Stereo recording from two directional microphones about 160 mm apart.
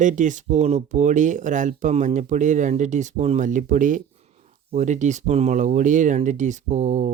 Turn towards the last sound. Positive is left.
turn(degrees=-50)  # may be behind; listen again after turning